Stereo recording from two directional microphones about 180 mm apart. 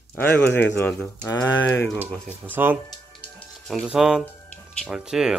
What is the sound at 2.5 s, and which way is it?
Speech, 10° right (ahead or behind).